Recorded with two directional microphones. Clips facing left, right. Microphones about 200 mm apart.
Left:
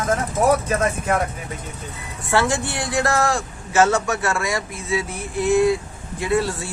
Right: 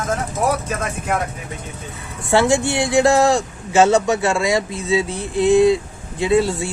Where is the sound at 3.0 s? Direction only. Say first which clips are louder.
Right 6 dB; 20° right (ahead or behind).